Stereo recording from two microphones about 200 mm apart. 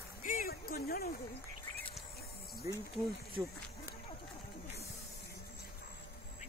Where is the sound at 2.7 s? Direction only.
15° right (ahead or behind).